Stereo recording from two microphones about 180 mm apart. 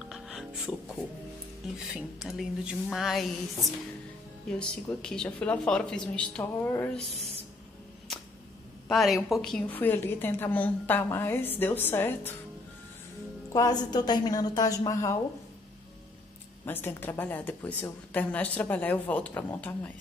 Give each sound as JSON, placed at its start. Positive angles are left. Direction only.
{"t": 0.1, "sound": "music", "side_deg": 0}
{"t": 1.6, "sound": "speech", "side_deg": 0}
{"t": 4.5, "sound": "a woman's voice", "side_deg": 5}
{"t": 8.8, "sound": "a woman's voice", "side_deg": 0}
{"t": 13.5, "sound": "a woman's voice", "side_deg": 20}
{"t": 16.6, "sound": "a woman's voice", "side_deg": 10}